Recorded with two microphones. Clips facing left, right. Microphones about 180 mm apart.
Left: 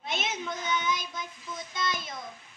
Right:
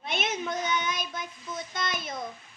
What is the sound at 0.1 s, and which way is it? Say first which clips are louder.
Child singing: right 3 dB; 55° right (ahead or behind).